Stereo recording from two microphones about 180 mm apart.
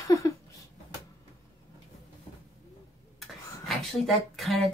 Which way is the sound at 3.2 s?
Centre (ahead or behind).